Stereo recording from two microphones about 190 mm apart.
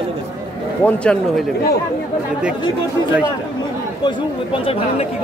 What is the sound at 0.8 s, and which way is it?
Speech, 5° left (ahead or behind).